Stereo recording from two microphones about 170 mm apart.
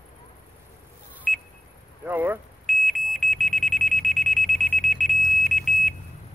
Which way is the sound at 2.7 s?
Centre (ahead or behind).